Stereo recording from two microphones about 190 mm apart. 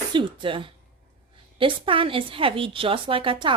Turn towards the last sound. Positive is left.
turn(degrees=-25)  # may be behind; listen again after turning